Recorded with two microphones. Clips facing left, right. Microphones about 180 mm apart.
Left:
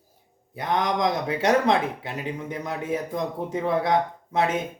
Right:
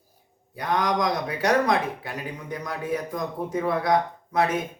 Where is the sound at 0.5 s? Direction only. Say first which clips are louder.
Even; 25° left (ahead or behind).